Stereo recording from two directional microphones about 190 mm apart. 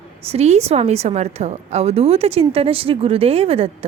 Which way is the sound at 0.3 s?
35° right (ahead or behind).